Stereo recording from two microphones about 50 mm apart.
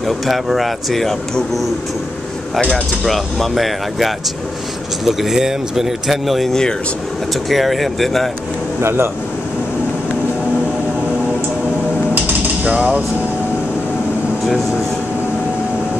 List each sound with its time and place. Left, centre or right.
0.0 s speech: centre
3.1 s speech: centre
8.8 s speech: right
12.2 s a sound: right